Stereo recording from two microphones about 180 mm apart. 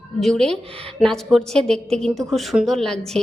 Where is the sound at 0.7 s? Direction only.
30° right (ahead or behind).